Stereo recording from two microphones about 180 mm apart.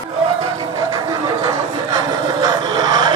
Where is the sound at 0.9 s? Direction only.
25° right (ahead or behind).